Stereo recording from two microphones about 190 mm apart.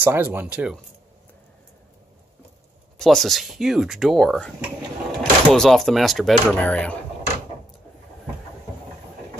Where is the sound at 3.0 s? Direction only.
Centre (ahead or behind).